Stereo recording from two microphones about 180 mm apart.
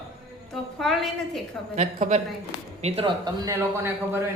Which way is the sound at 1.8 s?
40° right (ahead or behind).